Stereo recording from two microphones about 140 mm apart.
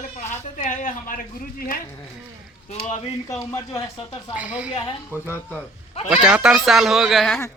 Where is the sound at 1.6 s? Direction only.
90° left.